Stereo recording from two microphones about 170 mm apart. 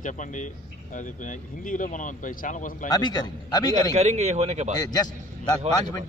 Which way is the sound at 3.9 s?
40° right (ahead or behind).